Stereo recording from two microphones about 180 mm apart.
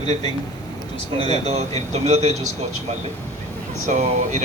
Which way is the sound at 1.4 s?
35° right (ahead or behind).